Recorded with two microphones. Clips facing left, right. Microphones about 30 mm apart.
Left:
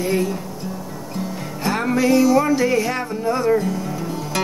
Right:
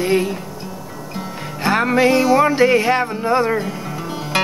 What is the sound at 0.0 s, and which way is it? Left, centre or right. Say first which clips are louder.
Music: right 3 dB; right.